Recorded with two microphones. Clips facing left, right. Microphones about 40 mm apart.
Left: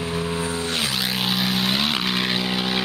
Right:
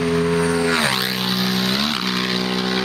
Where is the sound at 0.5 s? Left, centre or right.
Right.